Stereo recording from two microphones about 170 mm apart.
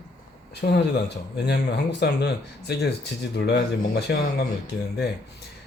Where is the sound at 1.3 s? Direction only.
80° left.